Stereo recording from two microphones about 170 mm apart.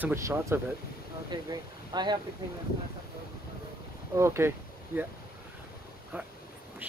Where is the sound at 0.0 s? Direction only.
15° right (ahead or behind).